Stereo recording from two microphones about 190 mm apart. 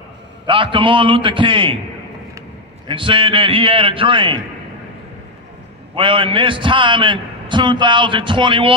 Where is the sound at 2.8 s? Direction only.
25° right (ahead or behind).